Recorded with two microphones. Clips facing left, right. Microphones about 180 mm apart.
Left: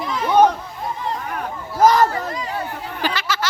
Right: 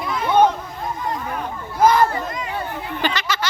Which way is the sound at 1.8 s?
40° left (ahead or behind).